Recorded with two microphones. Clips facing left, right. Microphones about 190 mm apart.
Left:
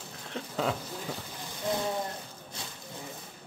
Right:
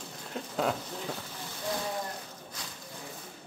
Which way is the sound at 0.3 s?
Centre (ahead or behind).